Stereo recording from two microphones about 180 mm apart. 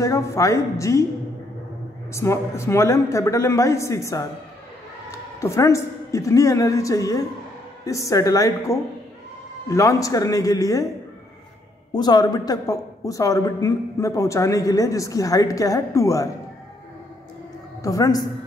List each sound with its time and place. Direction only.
0.0 s a man's voice: 15° left (ahead or behind)
2.1 s a man's voice: 15° left (ahead or behind)
5.4 s a man's voice: 15° left (ahead or behind)
11.9 s a woman's voice: 25° left (ahead or behind)
17.8 s a woman's voice: 20° left (ahead or behind)